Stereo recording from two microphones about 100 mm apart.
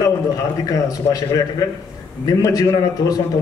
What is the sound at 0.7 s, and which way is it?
A man's voice, 35° left (ahead or behind).